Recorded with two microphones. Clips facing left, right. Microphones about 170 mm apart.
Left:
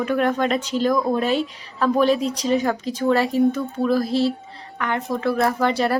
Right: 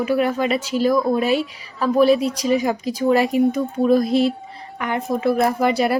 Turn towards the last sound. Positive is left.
turn(degrees=-10)  # may be behind; listen again after turning